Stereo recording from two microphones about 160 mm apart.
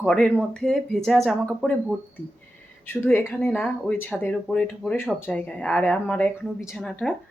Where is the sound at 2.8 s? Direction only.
10° left (ahead or behind).